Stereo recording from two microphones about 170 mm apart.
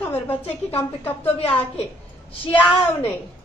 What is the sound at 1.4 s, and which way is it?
Speech, 35° left (ahead or behind).